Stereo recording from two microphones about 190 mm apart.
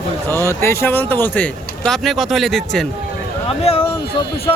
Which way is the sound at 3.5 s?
30° left (ahead or behind).